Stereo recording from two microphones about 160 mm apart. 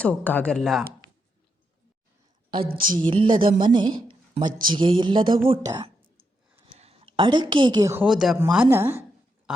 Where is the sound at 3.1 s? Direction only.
30° right (ahead or behind).